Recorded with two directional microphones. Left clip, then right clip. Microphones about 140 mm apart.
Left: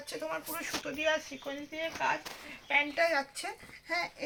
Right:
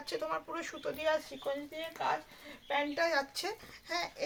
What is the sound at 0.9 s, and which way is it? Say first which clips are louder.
Speech: even; 75° right (ahead or behind).